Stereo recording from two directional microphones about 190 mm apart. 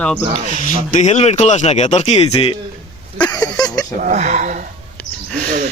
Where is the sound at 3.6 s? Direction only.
20° left (ahead or behind).